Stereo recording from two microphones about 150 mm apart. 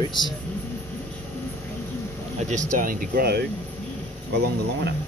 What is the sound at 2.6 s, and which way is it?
Speech, 65° right (ahead or behind).